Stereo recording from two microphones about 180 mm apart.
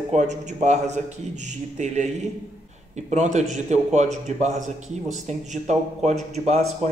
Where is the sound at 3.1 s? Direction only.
40° right (ahead or behind).